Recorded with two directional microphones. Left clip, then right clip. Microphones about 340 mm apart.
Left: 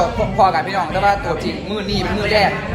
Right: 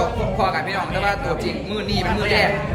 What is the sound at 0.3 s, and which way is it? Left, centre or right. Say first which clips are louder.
A man's voice: left 8 dB; centre.